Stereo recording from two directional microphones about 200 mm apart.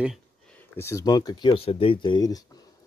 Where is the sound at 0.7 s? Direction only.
15° left (ahead or behind).